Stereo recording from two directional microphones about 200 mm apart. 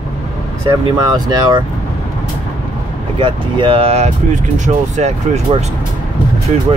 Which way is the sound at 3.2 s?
25° right (ahead or behind).